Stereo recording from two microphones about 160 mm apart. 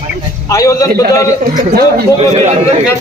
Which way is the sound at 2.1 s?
40° right (ahead or behind).